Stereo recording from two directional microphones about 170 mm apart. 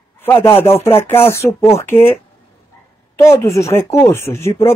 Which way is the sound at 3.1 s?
15° left (ahead or behind).